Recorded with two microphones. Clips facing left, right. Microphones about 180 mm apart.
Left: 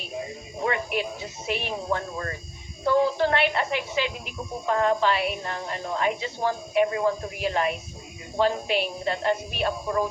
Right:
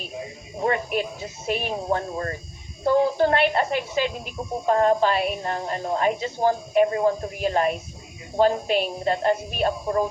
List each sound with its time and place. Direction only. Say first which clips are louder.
0.6 s speech: right 3 dB; 40° right (ahead or behind)